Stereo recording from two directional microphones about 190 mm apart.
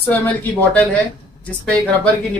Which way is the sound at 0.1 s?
10° left (ahead or behind).